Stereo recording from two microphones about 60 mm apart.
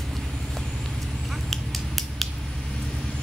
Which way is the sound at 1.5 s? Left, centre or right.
Centre.